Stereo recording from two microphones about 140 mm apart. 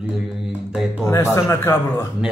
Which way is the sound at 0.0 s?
10° right (ahead or behind).